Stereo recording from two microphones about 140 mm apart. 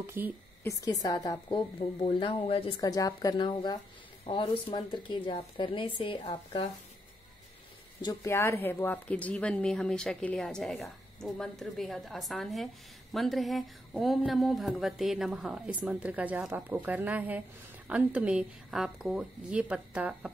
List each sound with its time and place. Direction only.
0.0 s a woman's voice: 15° right (ahead or behind)
0.7 s a woman's voice: 25° left (ahead or behind)
1.5 s a woman's voice: 40° left (ahead or behind)
2.8 s a woman's voice: 25° left (ahead or behind)
8.0 s a woman's voice: 25° left (ahead or behind); by 20.2 s 10° right (ahead or behind)